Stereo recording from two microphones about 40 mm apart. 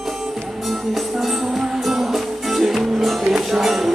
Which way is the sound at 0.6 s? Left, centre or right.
Centre.